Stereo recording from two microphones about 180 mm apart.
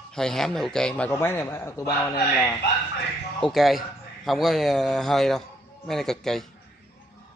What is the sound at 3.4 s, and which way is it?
A man's voice, centre (ahead or behind).